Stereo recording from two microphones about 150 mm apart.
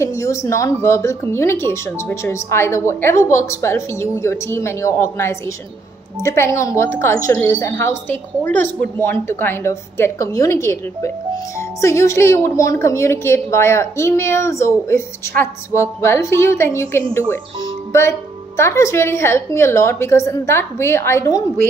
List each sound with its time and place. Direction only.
0.0 s a woman's voice: 20° left (ahead or behind)